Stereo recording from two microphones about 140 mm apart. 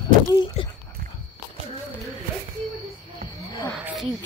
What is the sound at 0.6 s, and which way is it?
Speech, 45° left (ahead or behind).